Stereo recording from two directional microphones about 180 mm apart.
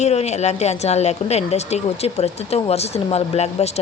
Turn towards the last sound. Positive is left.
turn(degrees=35)  # may be behind; listen again after turning